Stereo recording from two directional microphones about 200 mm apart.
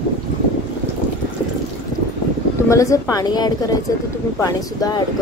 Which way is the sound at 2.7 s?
15° left (ahead or behind).